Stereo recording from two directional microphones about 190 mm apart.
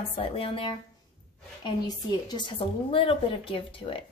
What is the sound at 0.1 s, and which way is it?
A woman's voice, 30° left (ahead or behind).